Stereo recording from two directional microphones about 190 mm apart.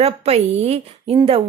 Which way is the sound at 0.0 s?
35° right (ahead or behind).